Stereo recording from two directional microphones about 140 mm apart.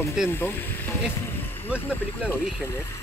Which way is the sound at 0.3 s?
15° left (ahead or behind).